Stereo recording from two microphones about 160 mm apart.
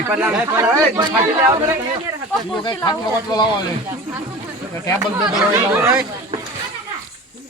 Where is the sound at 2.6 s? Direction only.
30° left (ahead or behind).